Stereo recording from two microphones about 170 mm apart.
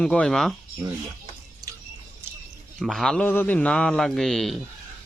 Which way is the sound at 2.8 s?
Centre (ahead or behind).